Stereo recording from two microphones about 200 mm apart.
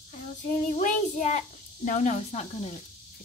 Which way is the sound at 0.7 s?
40° left (ahead or behind).